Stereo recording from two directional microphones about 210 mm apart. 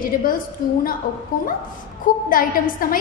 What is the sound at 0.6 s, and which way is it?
Speech, 45° left (ahead or behind).